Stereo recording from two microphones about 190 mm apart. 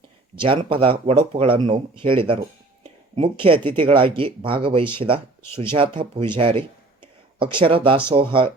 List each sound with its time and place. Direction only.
0.3 s speech: 30° right (ahead or behind)